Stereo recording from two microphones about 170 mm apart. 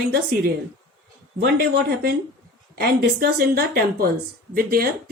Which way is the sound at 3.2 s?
65° right (ahead or behind).